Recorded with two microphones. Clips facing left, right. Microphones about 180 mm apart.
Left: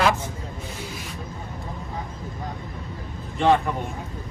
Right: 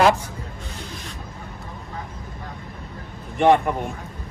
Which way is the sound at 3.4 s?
15° right (ahead or behind).